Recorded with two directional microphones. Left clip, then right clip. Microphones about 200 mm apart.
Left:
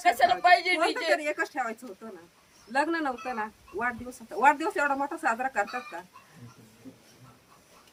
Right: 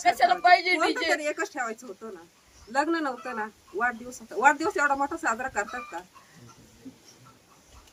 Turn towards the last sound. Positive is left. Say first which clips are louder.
# left 1 dB
turn(degrees=-5)  # may be behind; listen again after turning